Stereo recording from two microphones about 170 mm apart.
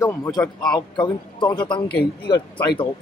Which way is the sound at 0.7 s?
25° left (ahead or behind).